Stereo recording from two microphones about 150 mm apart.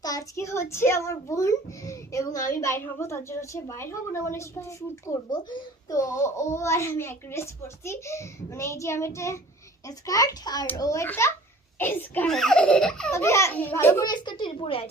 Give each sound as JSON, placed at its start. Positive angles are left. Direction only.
{"t": 0.0, "sound": "a child's voice", "side_deg": 25}
{"t": 12.3, "sound": "baby laughter", "side_deg": 5}
{"t": 13.1, "sound": "a child's voice", "side_deg": 20}
{"t": 14.1, "sound": "a woman's voice", "side_deg": 30}